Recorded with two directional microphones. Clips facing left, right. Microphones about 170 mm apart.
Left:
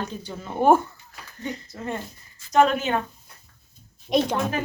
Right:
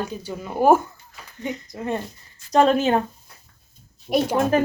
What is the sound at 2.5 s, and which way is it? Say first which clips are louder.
Speech: right 3 dB; 35° right (ahead or behind).